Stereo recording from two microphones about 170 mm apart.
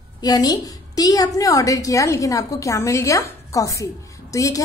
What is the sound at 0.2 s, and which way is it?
A woman's voice, 20° left (ahead or behind).